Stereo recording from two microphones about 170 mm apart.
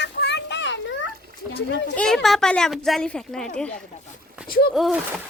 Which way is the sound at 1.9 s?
5° left (ahead or behind).